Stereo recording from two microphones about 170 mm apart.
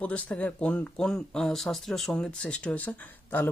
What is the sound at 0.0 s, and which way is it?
Speech, 10° left (ahead or behind).